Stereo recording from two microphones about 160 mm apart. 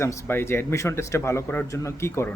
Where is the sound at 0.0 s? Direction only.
15° left (ahead or behind).